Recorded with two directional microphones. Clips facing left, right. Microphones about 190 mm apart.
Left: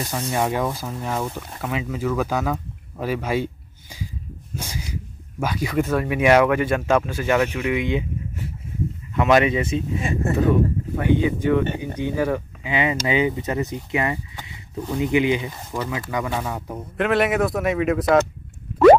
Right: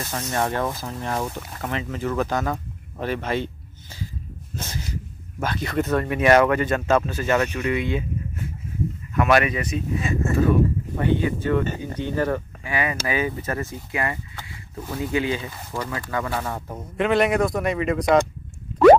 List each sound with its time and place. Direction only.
0.3 s speech: 10° left (ahead or behind)
9.1 s speech: 20° left (ahead or behind)
11.0 s speech: 15° left (ahead or behind)
16.6 s speech: centre (ahead or behind)